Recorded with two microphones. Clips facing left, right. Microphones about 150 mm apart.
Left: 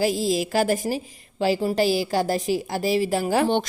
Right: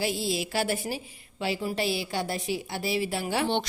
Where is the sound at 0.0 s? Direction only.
40° left (ahead or behind).